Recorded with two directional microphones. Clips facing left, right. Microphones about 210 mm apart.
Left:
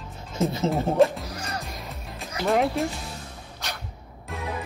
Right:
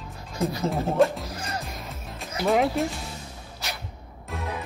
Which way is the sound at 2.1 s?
Centre (ahead or behind).